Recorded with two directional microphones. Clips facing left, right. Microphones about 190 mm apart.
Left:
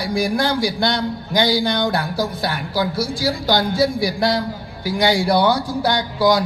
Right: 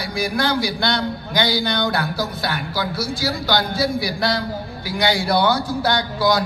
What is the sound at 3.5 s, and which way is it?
Speech, 45° left (ahead or behind).